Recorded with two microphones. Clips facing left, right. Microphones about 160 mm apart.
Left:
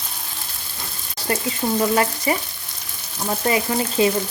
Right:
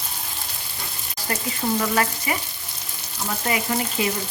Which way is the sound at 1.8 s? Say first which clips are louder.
Left 4 dB; 25° left (ahead or behind).